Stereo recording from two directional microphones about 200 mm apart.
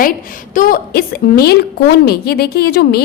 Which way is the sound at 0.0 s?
45° left (ahead or behind).